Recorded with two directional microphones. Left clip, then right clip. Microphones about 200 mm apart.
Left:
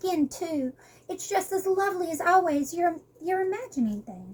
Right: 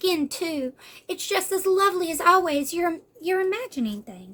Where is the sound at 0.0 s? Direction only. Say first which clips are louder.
Right 3 dB; 25° right (ahead or behind).